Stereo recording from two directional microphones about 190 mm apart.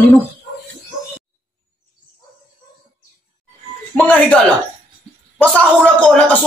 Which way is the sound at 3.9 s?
5° left (ahead or behind).